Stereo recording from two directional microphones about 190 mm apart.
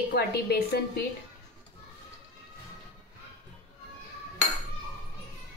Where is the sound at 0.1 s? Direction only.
55° left (ahead or behind).